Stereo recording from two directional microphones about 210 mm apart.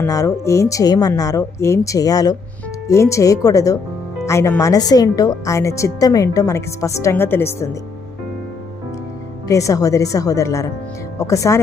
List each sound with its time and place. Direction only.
0.0 s a woman's voice: 15° left (ahead or behind)
9.5 s a woman's voice: 15° left (ahead or behind)